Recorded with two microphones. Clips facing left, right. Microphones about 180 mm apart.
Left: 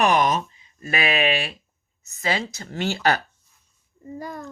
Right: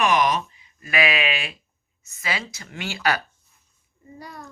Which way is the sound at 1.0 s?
45° left (ahead or behind).